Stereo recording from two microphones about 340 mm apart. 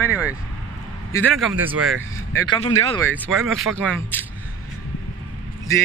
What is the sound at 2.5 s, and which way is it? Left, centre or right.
Speech, centre.